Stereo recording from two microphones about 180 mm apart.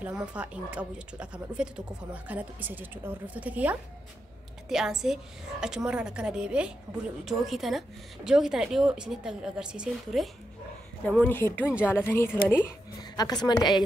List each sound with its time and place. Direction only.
0.0 s a woman's voice: 5° right (ahead or behind)
11.1 s speech: 10° left (ahead or behind)
11.6 s a woman's voice: 5° right (ahead or behind)
11.9 s a woman's voice: 15° left (ahead or behind)